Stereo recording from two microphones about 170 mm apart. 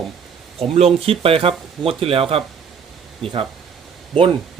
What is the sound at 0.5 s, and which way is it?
Speech, 35° right (ahead or behind).